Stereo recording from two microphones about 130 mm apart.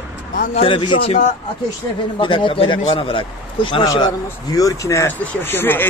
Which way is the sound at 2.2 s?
40° left (ahead or behind).